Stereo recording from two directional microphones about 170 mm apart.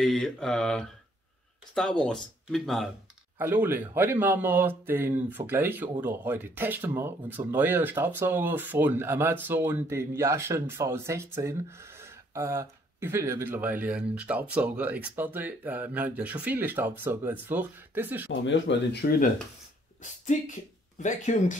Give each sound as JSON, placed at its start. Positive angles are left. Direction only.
{"t": 0.0, "sound": "speech", "side_deg": 0}
{"t": 3.3, "sound": "speech", "side_deg": -10}
{"t": 18.4, "sound": "speech", "side_deg": 90}
{"t": 21.0, "sound": "speech", "side_deg": 45}